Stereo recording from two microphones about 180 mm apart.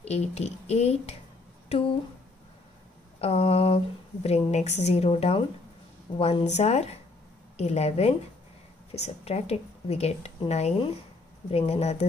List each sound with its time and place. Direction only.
0.0 s speech: 35° left (ahead or behind)
3.2 s speech: 35° left (ahead or behind)